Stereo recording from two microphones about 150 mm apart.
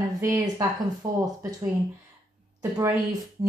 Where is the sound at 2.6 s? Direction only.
20° right (ahead or behind).